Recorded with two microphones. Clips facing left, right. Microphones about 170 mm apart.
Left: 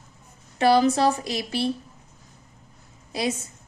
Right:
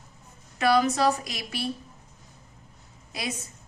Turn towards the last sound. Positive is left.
turn(degrees=30)  # may be behind; listen again after turning